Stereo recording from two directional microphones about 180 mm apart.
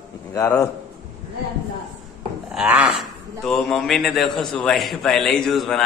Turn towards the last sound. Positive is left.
turn(degrees=0)  # may be behind; listen again after turning